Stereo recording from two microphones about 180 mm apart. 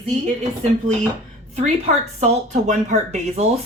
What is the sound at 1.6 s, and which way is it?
Speech, 35° right (ahead or behind).